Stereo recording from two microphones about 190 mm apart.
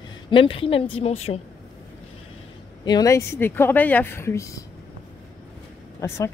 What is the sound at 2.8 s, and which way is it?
Speech, 20° left (ahead or behind).